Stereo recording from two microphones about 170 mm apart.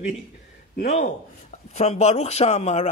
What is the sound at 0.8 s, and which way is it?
Speech, 45° left (ahead or behind).